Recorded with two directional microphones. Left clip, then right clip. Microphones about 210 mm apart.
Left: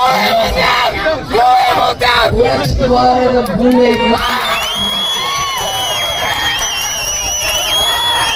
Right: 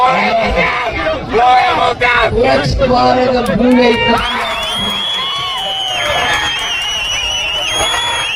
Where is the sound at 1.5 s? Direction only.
55° left (ahead or behind).